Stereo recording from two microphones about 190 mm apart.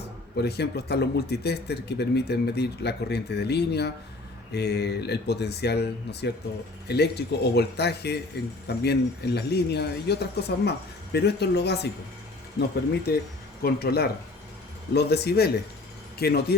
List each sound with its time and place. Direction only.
0.3 s speech: 60° left (ahead or behind)